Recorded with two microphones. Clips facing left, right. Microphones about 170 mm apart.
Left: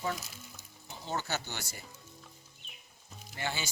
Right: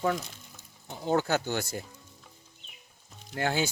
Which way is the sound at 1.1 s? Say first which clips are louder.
Right 10 dB; 55° right (ahead or behind).